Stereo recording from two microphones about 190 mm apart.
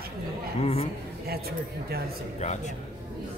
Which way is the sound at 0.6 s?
30° left (ahead or behind).